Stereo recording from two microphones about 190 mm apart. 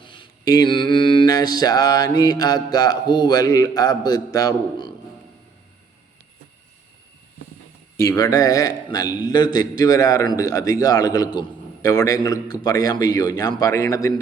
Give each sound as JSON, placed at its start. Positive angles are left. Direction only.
{"t": 0.0, "sound": "mantra", "side_deg": 25}
{"t": 0.9, "sound": "a man's voice", "side_deg": 25}
{"t": 7.9, "sound": "a man's voice", "side_deg": 20}